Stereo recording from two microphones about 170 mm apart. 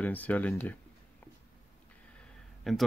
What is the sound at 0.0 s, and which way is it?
Speech, 10° left (ahead or behind).